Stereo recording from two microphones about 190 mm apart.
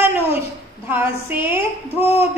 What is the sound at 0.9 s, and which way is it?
A woman's voice, 10° right (ahead or behind).